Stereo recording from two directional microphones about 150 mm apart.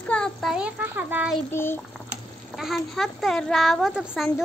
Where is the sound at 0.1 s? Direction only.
5° left (ahead or behind).